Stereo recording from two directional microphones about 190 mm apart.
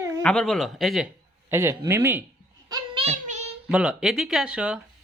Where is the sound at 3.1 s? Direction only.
35° right (ahead or behind).